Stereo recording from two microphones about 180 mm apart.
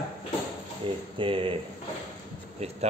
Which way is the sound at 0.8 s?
30° right (ahead or behind).